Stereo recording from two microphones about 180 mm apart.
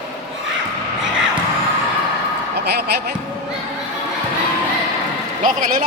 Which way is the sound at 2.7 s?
60° right (ahead or behind).